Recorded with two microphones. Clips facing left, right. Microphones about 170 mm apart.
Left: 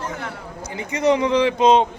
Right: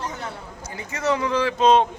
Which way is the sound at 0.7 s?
20° left (ahead or behind).